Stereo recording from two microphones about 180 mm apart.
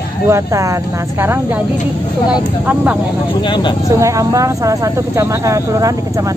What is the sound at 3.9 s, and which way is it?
A woman's voice, 15° right (ahead or behind).